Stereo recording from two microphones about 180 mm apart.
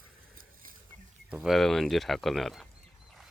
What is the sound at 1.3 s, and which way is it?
Speech, centre (ahead or behind).